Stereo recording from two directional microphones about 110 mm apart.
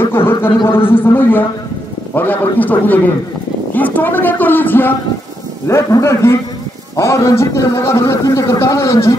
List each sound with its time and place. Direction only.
0.0 s a man's voice: 20° left (ahead or behind)
5.7 s a man's voice: 30° left (ahead or behind)